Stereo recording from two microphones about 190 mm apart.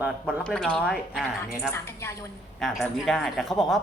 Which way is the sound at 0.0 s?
Centre (ahead or behind).